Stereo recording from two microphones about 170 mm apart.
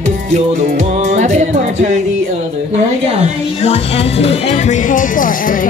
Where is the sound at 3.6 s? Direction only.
35° left (ahead or behind).